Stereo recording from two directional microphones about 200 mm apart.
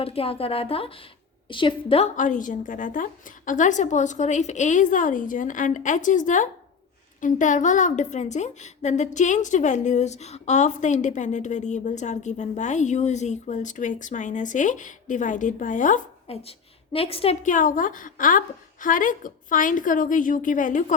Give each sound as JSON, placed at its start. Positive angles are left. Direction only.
{"t": 0.0, "sound": "a woman's voice", "side_deg": 30}